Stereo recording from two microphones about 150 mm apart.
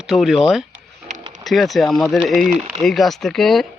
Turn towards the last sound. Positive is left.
turn(degrees=0)  # may be behind; listen again after turning